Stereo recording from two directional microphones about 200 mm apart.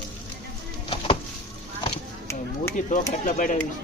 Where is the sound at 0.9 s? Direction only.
25° left (ahead or behind).